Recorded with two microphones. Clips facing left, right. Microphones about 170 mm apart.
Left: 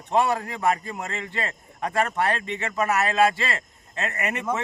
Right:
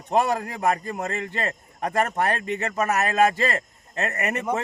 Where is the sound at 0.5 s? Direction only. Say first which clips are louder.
Even; 40° right (ahead or behind).